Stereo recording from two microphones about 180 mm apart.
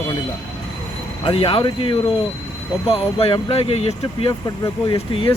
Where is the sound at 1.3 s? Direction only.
30° left (ahead or behind).